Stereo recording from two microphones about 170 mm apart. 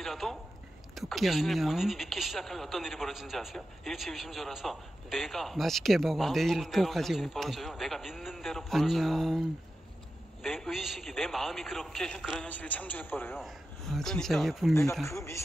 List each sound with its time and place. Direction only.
0.0 s a man's voice: centre (ahead or behind)
13.4 s speech: centre (ahead or behind)
14.7 s a man's voice: 15° left (ahead or behind)